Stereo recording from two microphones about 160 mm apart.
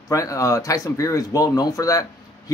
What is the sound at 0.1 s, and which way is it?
Speech, 20° left (ahead or behind).